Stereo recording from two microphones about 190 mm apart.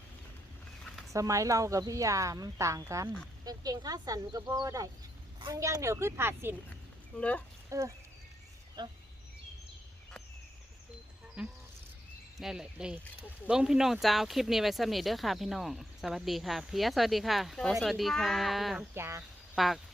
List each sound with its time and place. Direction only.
1.1 s speech: 15° right (ahead or behind)
7.2 s speech: 5° left (ahead or behind)
7.7 s speech: 15° right (ahead or behind)
11.4 s speech: 5° right (ahead or behind)
18.9 s speech: 15° right (ahead or behind)
19.5 s speech: centre (ahead or behind)